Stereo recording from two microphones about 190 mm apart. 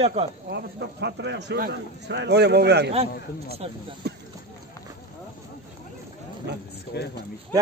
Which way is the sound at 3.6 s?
30° right (ahead or behind).